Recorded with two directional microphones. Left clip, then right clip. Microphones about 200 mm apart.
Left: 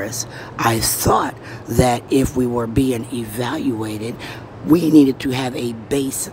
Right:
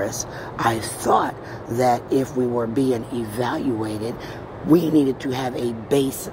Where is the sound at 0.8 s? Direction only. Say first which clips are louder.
Left 3 dB; 30° left (ahead or behind).